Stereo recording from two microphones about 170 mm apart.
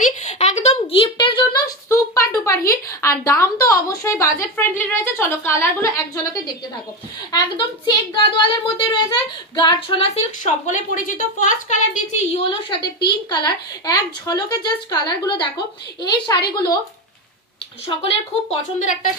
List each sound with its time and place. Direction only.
0.0 s a sound: 45° left (ahead or behind); by 6.2 s 15° left (ahead or behind)
7.3 s a woman's voice: 25° left (ahead or behind)
10.1 s speech: 45° left (ahead or behind)
13.0 s a woman's voice: 25° left (ahead or behind)
17.8 s a woman's voice: 35° left (ahead or behind)